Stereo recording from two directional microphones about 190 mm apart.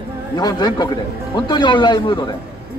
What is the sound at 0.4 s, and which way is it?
A man's voice, 20° left (ahead or behind).